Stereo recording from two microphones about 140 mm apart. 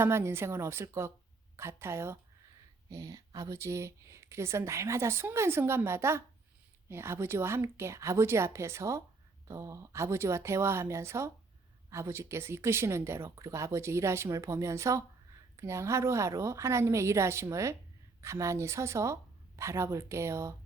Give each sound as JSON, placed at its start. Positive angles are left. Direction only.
{"t": 0.0, "sound": "a woman's voice", "side_deg": -15}